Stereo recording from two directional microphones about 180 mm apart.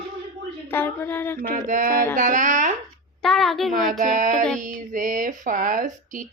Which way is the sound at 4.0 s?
45° right (ahead or behind).